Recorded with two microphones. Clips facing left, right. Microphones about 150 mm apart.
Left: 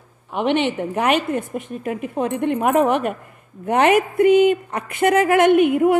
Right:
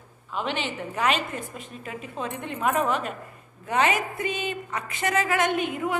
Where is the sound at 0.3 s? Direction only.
65° left (ahead or behind).